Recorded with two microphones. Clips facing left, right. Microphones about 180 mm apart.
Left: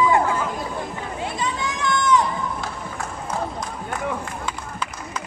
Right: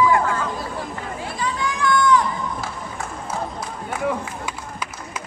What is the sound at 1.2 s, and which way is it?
Run, 20° left (ahead or behind).